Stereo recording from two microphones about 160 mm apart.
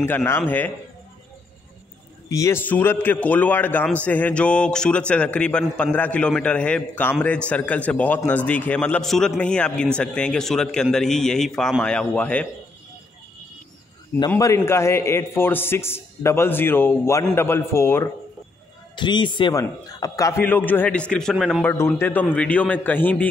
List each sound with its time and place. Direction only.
0.0 s a man's voice: 15° left (ahead or behind)
2.2 s a man's voice: 20° left (ahead or behind)
14.3 s a man's voice: 15° left (ahead or behind)
18.9 s a man's voice: 30° left (ahead or behind); by 21.6 s centre (ahead or behind)
21.6 s a man's voice: 15° left (ahead or behind)